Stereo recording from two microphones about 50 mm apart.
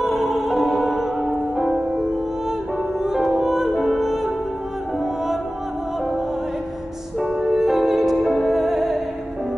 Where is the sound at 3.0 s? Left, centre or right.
Centre.